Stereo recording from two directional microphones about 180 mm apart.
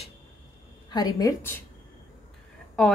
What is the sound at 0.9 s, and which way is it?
Speech, 20° left (ahead or behind).